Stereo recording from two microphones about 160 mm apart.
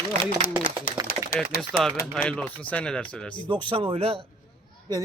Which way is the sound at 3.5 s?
30° right (ahead or behind).